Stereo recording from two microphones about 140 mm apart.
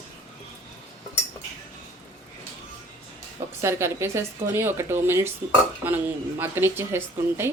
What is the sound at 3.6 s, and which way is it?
Speech, 20° right (ahead or behind).